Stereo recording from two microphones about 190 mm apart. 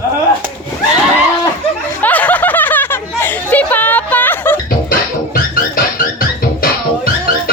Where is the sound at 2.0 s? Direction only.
10° left (ahead or behind).